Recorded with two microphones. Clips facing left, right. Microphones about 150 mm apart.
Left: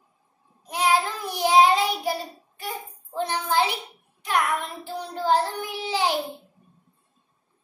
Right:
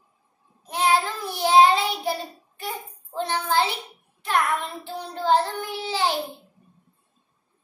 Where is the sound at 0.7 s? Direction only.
10° left (ahead or behind).